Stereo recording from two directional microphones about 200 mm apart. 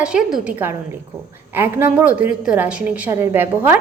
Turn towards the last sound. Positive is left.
turn(degrees=-10)  # may be behind; listen again after turning